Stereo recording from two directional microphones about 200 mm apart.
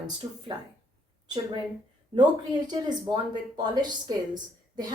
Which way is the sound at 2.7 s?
20° right (ahead or behind).